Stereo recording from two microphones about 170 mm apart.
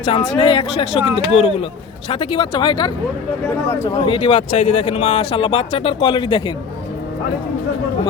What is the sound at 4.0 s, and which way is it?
Speech, 30° left (ahead or behind).